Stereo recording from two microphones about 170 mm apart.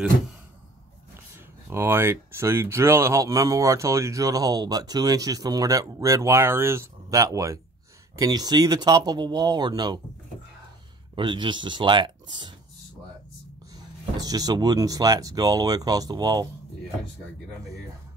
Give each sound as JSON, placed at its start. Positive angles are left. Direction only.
{"t": 1.7, "sound": "speech", "side_deg": -15}
{"t": 11.1, "sound": "speech", "side_deg": -30}
{"t": 14.1, "sound": "speech", "side_deg": -20}